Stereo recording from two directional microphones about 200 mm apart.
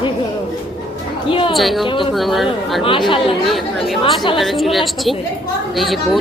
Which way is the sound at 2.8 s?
25° left (ahead or behind).